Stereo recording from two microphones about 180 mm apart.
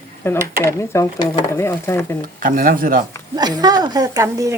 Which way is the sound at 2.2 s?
50° right (ahead or behind).